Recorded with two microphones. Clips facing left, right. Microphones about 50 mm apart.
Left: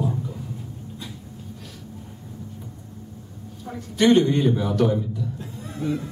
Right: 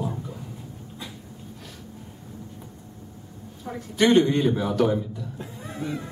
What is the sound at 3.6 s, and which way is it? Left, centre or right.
Speech, centre.